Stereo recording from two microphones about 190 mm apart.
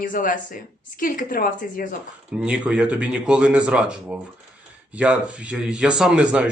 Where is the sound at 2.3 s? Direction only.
5° right (ahead or behind).